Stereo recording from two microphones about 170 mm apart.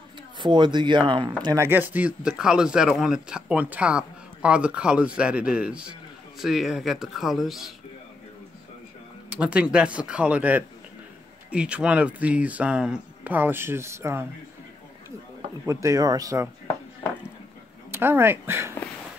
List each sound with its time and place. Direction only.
0.4 s speech: 25° right (ahead or behind)
1.4 s speech: 15° right (ahead or behind); by 7.7 s centre (ahead or behind)
9.3 s speech: 5° right (ahead or behind)
15.6 s speech: 15° right (ahead or behind)
17.9 s speech: 15° right (ahead or behind)